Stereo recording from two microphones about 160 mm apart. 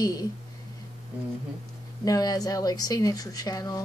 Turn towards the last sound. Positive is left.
turn(degrees=25)  # may be behind; listen again after turning